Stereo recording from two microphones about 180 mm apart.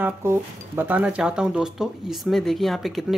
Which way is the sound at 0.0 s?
15° right (ahead or behind).